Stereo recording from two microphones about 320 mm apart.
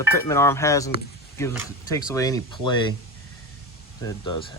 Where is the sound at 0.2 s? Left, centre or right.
Centre.